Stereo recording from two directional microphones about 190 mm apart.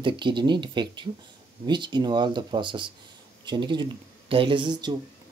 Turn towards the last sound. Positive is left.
turn(degrees=-20)  # may be behind; listen again after turning